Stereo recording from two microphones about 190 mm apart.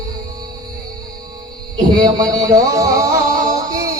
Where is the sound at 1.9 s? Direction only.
20° right (ahead or behind).